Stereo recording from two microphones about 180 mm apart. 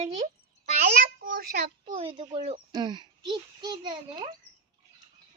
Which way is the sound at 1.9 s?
30° right (ahead or behind).